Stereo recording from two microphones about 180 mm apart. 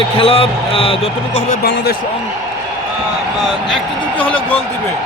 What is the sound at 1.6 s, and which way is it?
Speech, 65° left (ahead or behind).